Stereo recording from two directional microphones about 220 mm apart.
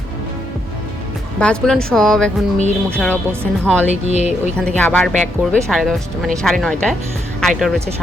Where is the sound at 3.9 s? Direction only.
30° right (ahead or behind).